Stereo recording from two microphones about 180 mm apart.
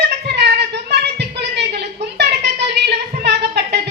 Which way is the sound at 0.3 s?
70° right (ahead or behind).